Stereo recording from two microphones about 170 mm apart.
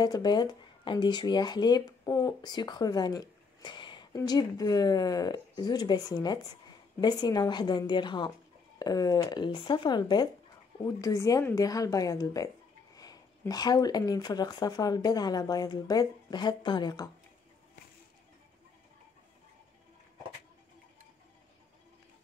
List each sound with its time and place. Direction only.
0.0 s speech: 25° left (ahead or behind)